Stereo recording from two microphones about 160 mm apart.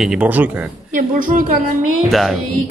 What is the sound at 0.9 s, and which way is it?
Speech, 55° right (ahead or behind).